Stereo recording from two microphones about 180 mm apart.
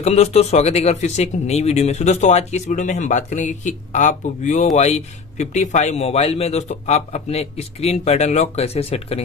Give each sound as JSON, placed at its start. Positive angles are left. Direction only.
{"t": 0.0, "sound": "speech", "side_deg": 35}